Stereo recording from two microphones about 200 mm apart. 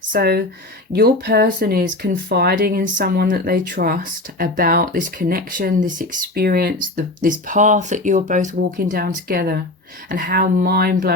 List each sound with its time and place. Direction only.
0.1 s speech: 50° right (ahead or behind)